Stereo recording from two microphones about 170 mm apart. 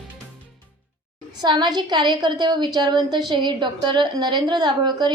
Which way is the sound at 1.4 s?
25° right (ahead or behind).